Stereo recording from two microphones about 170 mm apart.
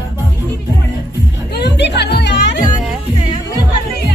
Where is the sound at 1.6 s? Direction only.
80° left.